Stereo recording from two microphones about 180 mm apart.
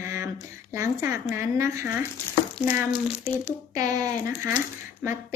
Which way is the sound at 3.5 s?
20° right (ahead or behind).